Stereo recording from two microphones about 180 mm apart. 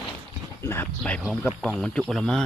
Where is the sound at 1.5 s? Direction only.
Centre (ahead or behind).